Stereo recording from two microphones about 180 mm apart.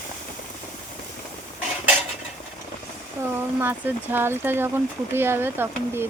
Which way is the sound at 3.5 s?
10° right (ahead or behind).